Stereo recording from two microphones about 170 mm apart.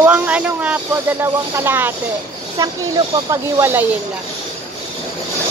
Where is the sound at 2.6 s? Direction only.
25° right (ahead or behind).